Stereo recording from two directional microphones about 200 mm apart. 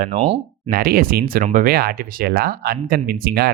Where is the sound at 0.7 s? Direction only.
50° right (ahead or behind).